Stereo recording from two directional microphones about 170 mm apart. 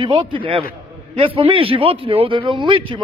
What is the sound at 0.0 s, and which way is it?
A man's voice, 30° right (ahead or behind).